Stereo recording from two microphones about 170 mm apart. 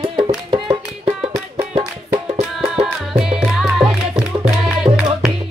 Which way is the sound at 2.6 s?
Centre (ahead or behind).